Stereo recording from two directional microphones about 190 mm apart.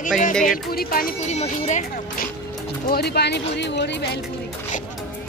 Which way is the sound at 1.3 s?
35° left (ahead or behind).